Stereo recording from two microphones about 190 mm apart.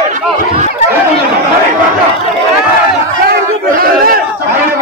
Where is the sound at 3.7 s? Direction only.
50° right (ahead or behind).